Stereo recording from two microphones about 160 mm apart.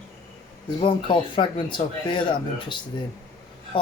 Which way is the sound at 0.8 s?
30° left (ahead or behind).